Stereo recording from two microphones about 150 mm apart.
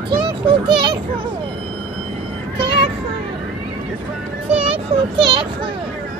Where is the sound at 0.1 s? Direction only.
30° right (ahead or behind).